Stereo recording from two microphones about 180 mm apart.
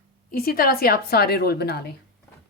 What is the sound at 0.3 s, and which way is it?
A woman's voice, 55° left (ahead or behind).